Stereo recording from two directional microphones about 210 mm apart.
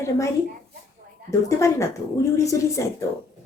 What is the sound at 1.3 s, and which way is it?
Speech, 15° left (ahead or behind).